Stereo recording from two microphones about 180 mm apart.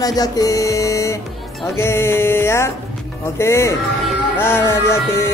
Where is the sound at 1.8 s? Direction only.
15° left (ahead or behind).